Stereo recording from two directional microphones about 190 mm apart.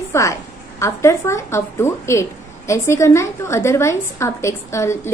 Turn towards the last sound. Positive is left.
turn(degrees=15)  # may be behind; listen again after turning